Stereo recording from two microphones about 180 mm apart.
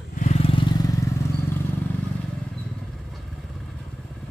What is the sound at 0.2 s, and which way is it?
Vehicle, 35° left (ahead or behind).